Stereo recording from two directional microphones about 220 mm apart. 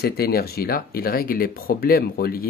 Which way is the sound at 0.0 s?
45° left (ahead or behind).